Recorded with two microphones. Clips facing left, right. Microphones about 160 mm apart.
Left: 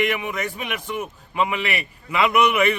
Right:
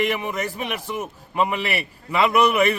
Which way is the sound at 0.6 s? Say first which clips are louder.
Right 1 dB; 35° right (ahead or behind).